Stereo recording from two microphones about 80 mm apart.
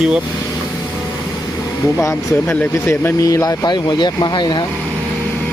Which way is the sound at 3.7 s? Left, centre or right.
Left.